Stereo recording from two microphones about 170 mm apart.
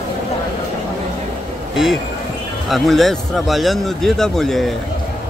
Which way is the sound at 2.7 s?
Centre (ahead or behind).